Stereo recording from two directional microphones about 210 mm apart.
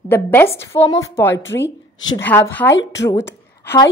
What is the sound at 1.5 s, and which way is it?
Speech, 60° left (ahead or behind).